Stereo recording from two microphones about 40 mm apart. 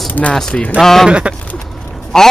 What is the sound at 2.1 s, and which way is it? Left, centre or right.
Speech, centre.